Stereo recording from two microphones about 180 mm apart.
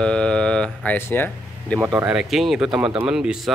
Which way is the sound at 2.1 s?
Centre (ahead or behind).